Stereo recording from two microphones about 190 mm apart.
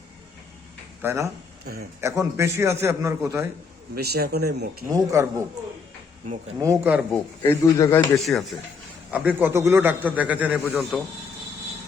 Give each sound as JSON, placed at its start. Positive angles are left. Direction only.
{"t": 1.0, "sound": "a man's voice", "side_deg": -15}
{"t": 3.9, "sound": "speech", "side_deg": -55}
{"t": 4.9, "sound": "a man's voice", "side_deg": -15}
{"t": 6.6, "sound": "a man's voice", "side_deg": -10}
{"t": 7.1, "sound": "speech", "side_deg": 10}
{"t": 8.2, "sound": "a man's voice", "side_deg": 0}